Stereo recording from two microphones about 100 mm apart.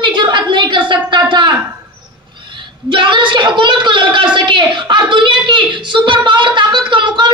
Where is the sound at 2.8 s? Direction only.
55° right (ahead or behind).